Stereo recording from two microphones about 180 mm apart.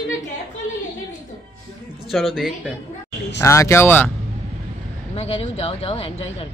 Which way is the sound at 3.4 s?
15° left (ahead or behind).